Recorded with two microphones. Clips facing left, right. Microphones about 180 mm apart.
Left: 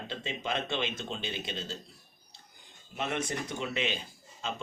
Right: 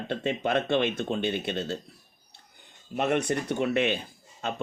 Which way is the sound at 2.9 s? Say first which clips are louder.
Right 8 dB; 60° right (ahead or behind).